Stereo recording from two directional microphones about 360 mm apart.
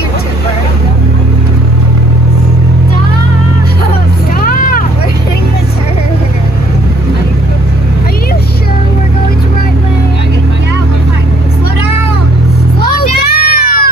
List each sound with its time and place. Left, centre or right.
4.4 s vehicle: left
12.9 s child singing: left